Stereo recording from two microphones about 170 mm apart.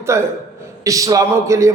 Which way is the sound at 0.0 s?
15° right (ahead or behind).